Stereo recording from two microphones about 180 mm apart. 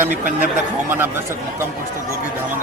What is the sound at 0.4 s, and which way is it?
Speech, 10° right (ahead or behind).